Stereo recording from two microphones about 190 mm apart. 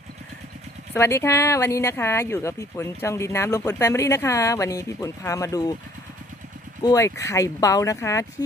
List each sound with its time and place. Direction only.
0.9 s speech: 15° left (ahead or behind)
6.8 s speech: 15° left (ahead or behind)